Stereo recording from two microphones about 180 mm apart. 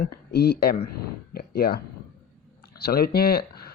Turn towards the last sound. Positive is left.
turn(degrees=60)  # may be behind; listen again after turning